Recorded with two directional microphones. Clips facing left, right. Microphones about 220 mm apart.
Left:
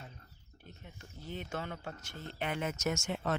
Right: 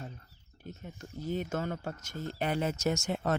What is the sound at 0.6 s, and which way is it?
Speech, 45° right (ahead or behind).